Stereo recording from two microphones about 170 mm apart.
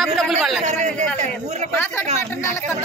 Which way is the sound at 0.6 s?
45° right (ahead or behind).